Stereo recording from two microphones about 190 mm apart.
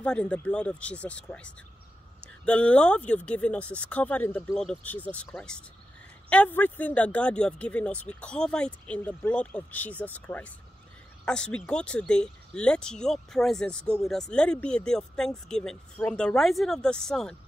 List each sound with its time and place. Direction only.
0.0 s speech: 5° left (ahead or behind)